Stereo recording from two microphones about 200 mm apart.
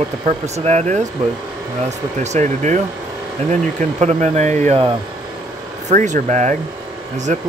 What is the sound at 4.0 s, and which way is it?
Speech, 35° right (ahead or behind).